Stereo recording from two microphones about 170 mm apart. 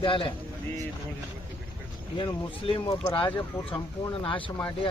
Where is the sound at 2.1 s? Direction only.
30° left (ahead or behind).